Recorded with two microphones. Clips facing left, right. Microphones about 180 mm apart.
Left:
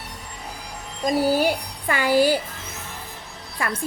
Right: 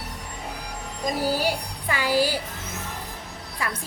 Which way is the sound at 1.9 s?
55° left (ahead or behind).